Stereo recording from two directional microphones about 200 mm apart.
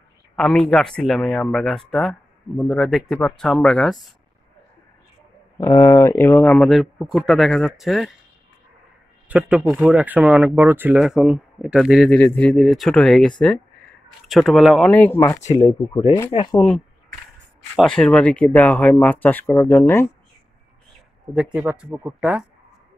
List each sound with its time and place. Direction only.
0.4 s speech: 5° left (ahead or behind)
5.6 s speech: 15° left (ahead or behind); by 8.1 s centre (ahead or behind)
9.3 s speech: 5° right (ahead or behind); by 15.4 s 15° left (ahead or behind)
15.9 s speech: 25° left (ahead or behind)
17.7 s speech: 5° left (ahead or behind)
21.3 s speech: 5° right (ahead or behind)